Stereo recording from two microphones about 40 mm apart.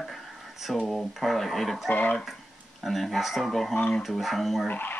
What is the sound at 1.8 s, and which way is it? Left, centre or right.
Speech, left.